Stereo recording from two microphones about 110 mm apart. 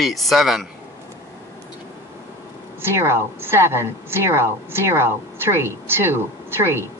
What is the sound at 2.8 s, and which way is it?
A woman's voice, 25° right (ahead or behind).